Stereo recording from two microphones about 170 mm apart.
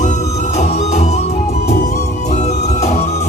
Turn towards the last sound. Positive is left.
turn(degrees=40)  # may be behind; listen again after turning